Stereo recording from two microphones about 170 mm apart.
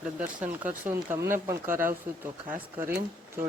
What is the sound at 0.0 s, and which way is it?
Speech, 10° right (ahead or behind).